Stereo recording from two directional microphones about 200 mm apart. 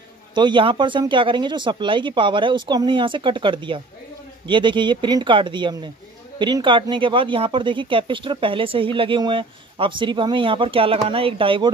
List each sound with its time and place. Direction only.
0.3 s speech: 25° right (ahead or behind)